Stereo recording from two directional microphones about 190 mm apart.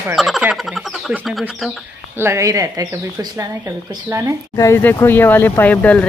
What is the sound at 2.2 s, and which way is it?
Speech, 15° right (ahead or behind).